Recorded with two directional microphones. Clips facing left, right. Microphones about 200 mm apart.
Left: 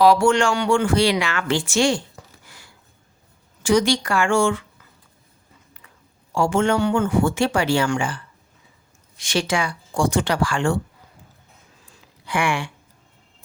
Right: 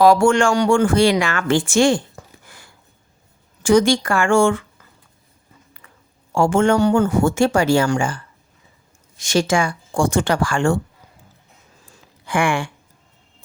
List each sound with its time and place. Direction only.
0.0 s speech: 50° right (ahead or behind)
5.7 s a sound: 50° right (ahead or behind)
6.3 s speech: 50° right (ahead or behind)
12.2 s speech: 50° right (ahead or behind)